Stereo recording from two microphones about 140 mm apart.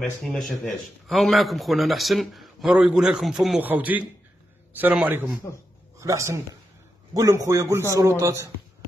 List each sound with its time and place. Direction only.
0.0 s a man's voice: centre (ahead or behind)
5.9 s a man's voice: 20° right (ahead or behind)